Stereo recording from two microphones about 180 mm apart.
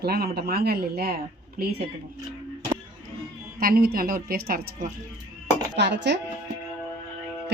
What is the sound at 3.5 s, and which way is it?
Speech, 55° right (ahead or behind).